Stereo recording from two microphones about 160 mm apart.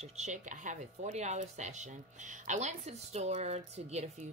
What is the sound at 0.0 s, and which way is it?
Speech, 45° right (ahead or behind).